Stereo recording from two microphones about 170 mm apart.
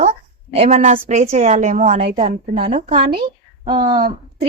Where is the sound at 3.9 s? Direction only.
60° right (ahead or behind).